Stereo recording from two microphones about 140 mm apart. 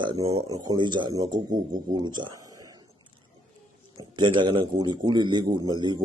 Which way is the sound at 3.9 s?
30° right (ahead or behind).